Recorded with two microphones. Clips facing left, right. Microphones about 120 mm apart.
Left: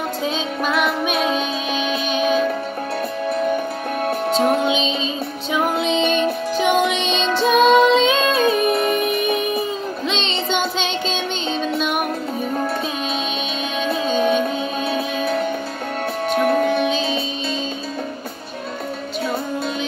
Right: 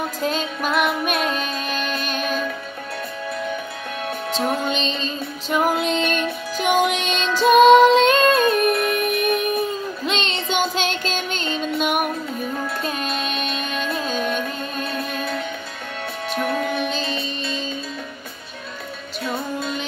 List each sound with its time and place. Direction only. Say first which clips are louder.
0.2 s music: even; centre (ahead or behind)
3.5 s music: left 7 dB; 40° left (ahead or behind)
4.5 s music: left 5 dB; 5° left (ahead or behind)
13.7 s music: left 7 dB; centre (ahead or behind)
16.7 s music: left 5 dB; centre (ahead or behind)